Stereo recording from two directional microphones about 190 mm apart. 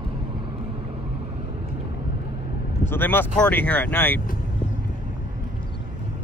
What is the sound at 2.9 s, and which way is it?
Speech, 10° left (ahead or behind).